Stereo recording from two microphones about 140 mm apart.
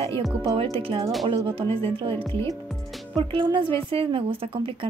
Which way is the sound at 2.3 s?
20° left (ahead or behind).